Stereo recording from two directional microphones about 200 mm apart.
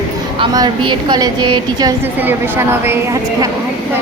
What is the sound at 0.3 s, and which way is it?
A woman's voice, 20° right (ahead or behind).